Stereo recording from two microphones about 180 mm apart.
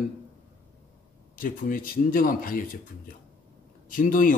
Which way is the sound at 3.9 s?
45° left (ahead or behind).